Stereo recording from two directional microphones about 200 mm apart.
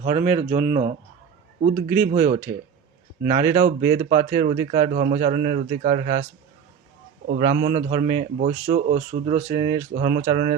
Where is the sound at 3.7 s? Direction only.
45° right (ahead or behind).